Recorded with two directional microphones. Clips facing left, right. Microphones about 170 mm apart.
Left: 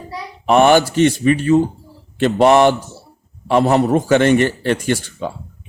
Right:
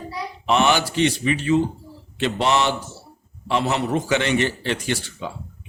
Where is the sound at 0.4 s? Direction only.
50° left (ahead or behind).